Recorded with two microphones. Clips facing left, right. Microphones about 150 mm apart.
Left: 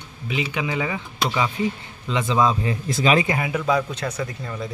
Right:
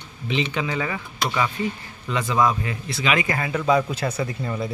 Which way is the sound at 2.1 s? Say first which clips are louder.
Left 1 dB; 20° left (ahead or behind).